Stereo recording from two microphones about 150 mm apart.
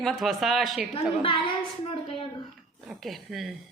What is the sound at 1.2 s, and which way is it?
A woman's voice, 35° left (ahead or behind).